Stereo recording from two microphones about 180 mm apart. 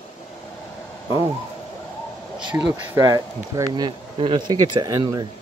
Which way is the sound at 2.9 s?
20° right (ahead or behind).